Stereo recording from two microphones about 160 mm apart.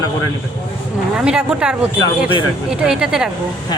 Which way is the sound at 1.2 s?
5° right (ahead or behind).